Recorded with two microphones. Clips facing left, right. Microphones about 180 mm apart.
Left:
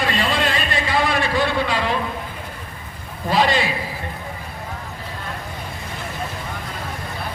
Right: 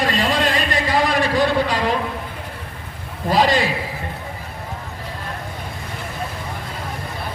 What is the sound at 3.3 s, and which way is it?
Speech, 40° right (ahead or behind).